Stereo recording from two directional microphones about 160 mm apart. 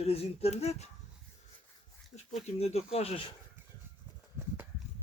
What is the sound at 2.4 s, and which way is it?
Speech, 40° left (ahead or behind).